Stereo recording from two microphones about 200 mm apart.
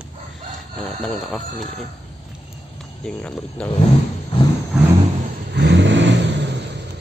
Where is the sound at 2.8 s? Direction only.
5° left (ahead or behind).